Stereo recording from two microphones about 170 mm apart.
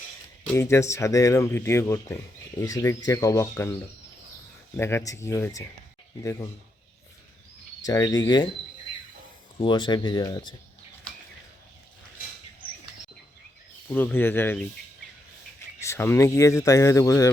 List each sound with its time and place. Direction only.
0.4 s speech: 15° left (ahead or behind)
7.9 s speech: 20° left (ahead or behind)
9.6 s speech: 25° left (ahead or behind)
13.8 s speech: 10° left (ahead or behind)
15.8 s speech: 15° left (ahead or behind)